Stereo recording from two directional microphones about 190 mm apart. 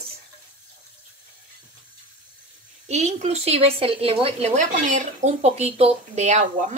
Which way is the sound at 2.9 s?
35° right (ahead or behind).